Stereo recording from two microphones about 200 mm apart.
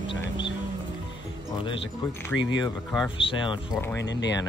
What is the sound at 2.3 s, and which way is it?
Speech, 5° left (ahead or behind).